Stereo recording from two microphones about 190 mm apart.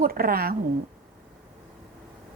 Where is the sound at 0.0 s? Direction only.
50° right (ahead or behind).